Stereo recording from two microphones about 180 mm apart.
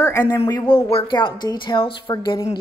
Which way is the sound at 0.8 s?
30° left (ahead or behind).